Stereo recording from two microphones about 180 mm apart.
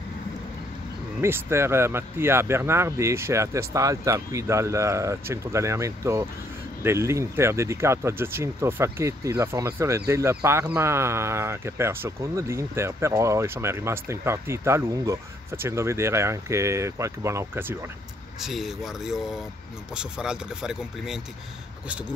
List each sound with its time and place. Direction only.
1.2 s speech: 15° right (ahead or behind)
18.4 s speech: centre (ahead or behind)